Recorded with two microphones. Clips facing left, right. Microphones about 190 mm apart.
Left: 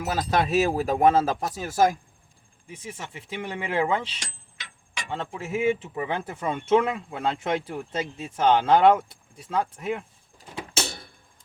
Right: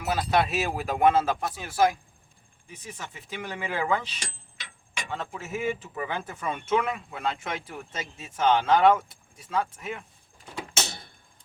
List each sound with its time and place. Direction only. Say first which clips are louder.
0.0 s speech: even; 40° left (ahead or behind)
2.7 s speech: left 3 dB; 25° left (ahead or behind)